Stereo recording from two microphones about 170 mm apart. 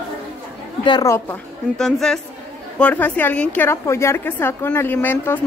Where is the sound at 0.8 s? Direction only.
25° left (ahead or behind).